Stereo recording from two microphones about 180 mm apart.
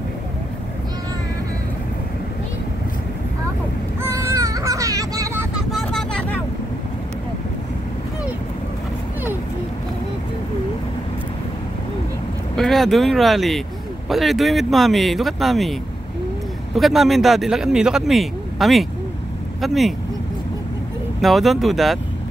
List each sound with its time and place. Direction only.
4.0 s a sound: 15° right (ahead or behind)
5.7 s vehicle: centre (ahead or behind)
12.5 s speech: centre (ahead or behind)
16.7 s speech: centre (ahead or behind)
21.2 s speech: centre (ahead or behind)